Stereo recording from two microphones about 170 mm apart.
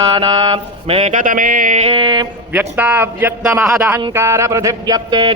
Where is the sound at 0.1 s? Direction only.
30° right (ahead or behind).